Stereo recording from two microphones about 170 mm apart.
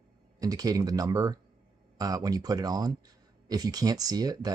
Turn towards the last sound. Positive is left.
turn(degrees=-20)  # may be behind; listen again after turning